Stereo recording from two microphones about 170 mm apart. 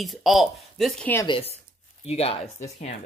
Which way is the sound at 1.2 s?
30° left (ahead or behind).